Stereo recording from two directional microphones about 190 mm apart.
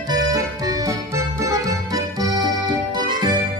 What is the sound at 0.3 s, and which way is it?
Music, 20° right (ahead or behind).